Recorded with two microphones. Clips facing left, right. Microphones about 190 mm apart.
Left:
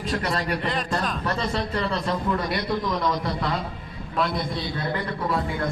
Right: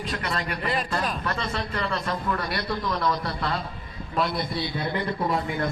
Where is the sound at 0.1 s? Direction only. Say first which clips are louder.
Left 5 dB; 40° left (ahead or behind).